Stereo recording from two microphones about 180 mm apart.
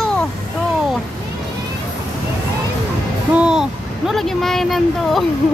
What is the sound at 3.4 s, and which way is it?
Music, 5° right (ahead or behind).